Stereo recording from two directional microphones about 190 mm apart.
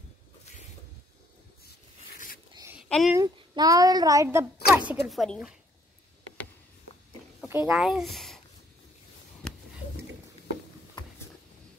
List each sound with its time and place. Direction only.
2.9 s speech: centre (ahead or behind)
3.2 s speech: 20° right (ahead or behind); by 5.6 s centre (ahead or behind)
7.6 s speech: 5° right (ahead or behind)